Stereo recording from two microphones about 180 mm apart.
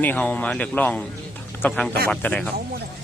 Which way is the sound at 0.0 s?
10° left (ahead or behind).